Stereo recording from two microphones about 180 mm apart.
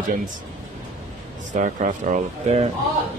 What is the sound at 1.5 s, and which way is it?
Speech, 45° right (ahead or behind).